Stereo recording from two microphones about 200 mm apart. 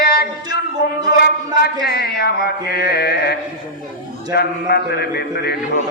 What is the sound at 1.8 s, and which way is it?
A man's voice, 50° left (ahead or behind).